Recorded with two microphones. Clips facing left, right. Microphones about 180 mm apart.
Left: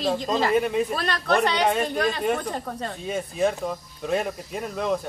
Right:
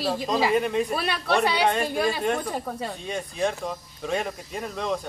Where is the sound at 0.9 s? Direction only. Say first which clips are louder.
Left 1 dB; 10° right (ahead or behind).